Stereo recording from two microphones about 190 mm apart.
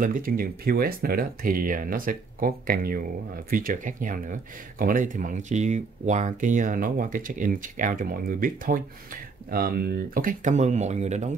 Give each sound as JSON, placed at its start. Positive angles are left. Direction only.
{"t": 0.0, "sound": "speech", "side_deg": -45}